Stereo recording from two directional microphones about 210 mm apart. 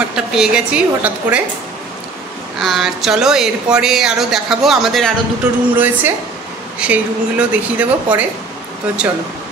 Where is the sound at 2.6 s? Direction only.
Centre (ahead or behind).